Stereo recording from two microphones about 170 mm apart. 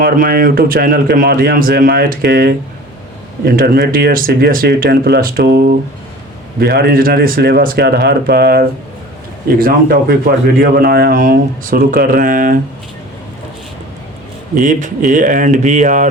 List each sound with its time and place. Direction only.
0.0 s speech: 60° right (ahead or behind)
14.5 s speech: 45° right (ahead or behind)